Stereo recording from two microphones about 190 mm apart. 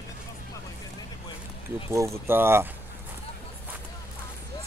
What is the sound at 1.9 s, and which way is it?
Speech, 15° right (ahead or behind).